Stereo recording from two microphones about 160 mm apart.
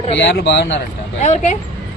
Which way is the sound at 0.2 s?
90° left.